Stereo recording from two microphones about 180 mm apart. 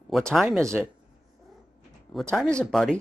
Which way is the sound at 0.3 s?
Centre (ahead or behind).